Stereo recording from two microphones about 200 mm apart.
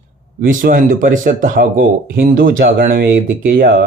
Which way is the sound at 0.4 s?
40° right (ahead or behind).